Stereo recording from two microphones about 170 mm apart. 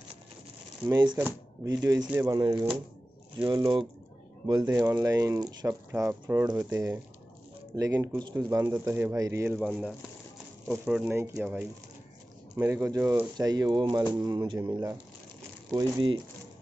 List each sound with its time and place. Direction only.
0.8 s speech: 20° right (ahead or behind)
9.6 s speech: centre (ahead or behind); by 16.2 s 25° right (ahead or behind)